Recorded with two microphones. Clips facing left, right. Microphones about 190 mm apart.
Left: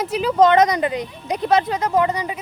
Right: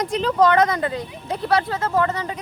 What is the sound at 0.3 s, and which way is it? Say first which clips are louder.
Speech: left 3 dB; 20° left (ahead or behind).